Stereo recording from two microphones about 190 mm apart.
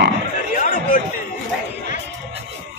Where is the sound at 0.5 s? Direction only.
45° left (ahead or behind).